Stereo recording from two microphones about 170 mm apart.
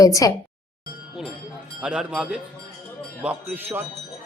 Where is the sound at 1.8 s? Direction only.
5° right (ahead or behind).